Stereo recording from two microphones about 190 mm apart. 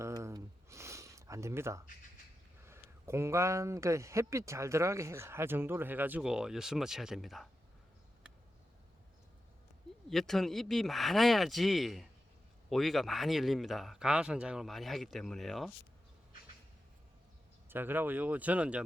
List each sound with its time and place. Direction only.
0.0 s a sound: 15° right (ahead or behind)
2.6 s speech: 15° right (ahead or behind)
10.1 s speech: centre (ahead or behind)
17.7 s speech: 10° right (ahead or behind)